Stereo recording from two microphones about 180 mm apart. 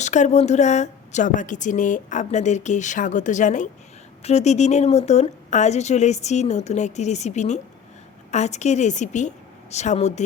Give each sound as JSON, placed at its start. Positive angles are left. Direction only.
{"t": 0.0, "sound": "a woman's voice", "side_deg": 40}